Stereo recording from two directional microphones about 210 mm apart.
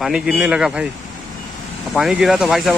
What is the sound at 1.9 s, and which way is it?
Speech, centre (ahead or behind).